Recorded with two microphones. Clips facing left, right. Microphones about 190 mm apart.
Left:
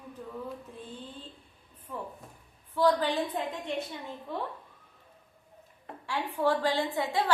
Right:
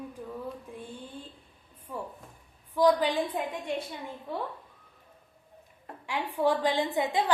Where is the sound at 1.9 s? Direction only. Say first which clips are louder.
Right 1 dB; 10° right (ahead or behind).